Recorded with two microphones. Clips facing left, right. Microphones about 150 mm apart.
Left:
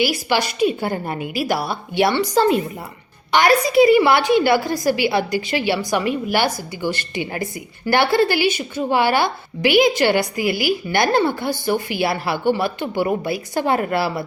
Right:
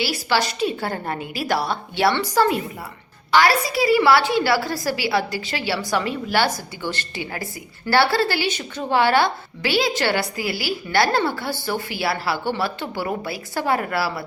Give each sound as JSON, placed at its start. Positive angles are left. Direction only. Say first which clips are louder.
{"t": 0.0, "sound": "a woman's voice", "louder": "left 3 dB", "side_deg": 15}